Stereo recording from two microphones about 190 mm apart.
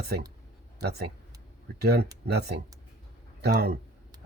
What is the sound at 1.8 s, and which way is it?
Speech, 60° right (ahead or behind).